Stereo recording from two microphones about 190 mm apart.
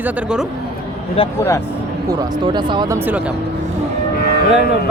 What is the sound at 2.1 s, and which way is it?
Speech, 20° right (ahead or behind).